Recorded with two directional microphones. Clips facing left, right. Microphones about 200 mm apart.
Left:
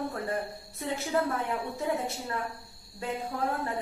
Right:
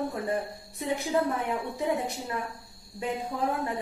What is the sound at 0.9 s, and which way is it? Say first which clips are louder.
A woman's voice: right 1 dB; 15° right (ahead or behind).